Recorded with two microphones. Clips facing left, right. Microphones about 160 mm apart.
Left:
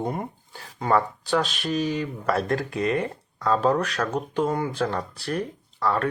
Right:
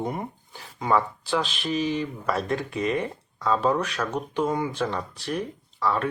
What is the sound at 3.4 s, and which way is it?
Speech, 50° left (ahead or behind).